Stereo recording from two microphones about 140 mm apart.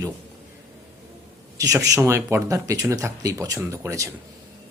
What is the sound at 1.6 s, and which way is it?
Speech, 25° right (ahead or behind).